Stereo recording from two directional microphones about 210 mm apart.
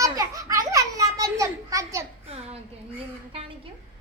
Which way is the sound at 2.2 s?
30° right (ahead or behind).